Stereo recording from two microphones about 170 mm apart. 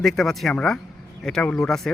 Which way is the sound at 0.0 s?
Centre (ahead or behind).